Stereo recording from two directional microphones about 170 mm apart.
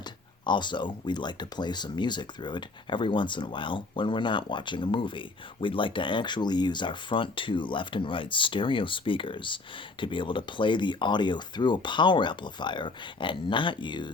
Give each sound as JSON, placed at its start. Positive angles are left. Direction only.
{"t": 0.0, "sound": "speech", "side_deg": 25}